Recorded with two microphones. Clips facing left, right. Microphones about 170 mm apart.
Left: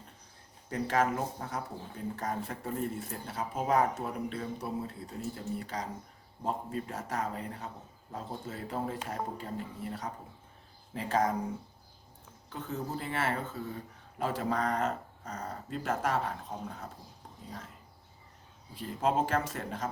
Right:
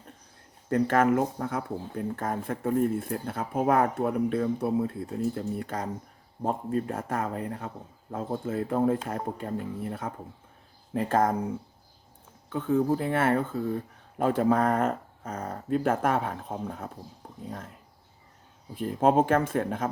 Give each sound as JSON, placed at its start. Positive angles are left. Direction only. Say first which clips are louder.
{"t": 0.7, "sound": "speech", "louder": "right 7 dB", "side_deg": -60}
{"t": 12.5, "sound": "speech", "louder": "right 12 dB", "side_deg": -55}
{"t": 18.7, "sound": "speech", "louder": "right 7 dB", "side_deg": -50}